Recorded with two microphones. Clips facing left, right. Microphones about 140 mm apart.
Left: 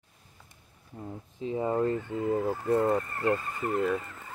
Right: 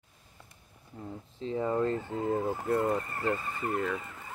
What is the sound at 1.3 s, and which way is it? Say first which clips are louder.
Speech: left 1 dB; 15° left (ahead or behind).